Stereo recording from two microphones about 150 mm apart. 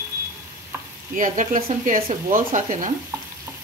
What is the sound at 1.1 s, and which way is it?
Speech, 60° right (ahead or behind).